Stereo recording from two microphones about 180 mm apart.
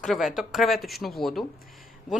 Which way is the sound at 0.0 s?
Centre (ahead or behind).